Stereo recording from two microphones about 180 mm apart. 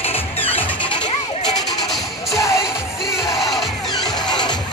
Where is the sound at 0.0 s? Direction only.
30° left (ahead or behind).